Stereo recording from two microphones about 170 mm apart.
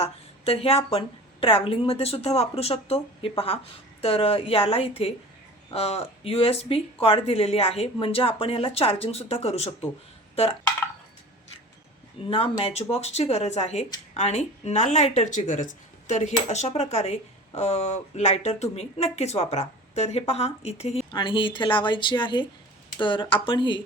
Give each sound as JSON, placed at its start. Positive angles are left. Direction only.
{"t": 0.0, "sound": "speech", "side_deg": 35}
{"t": 12.2, "sound": "speech", "side_deg": 30}